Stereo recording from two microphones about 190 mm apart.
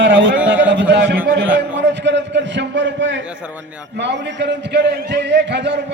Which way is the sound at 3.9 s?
65° right (ahead or behind).